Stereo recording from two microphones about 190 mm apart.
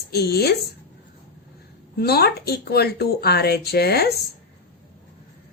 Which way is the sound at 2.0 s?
55° left (ahead or behind).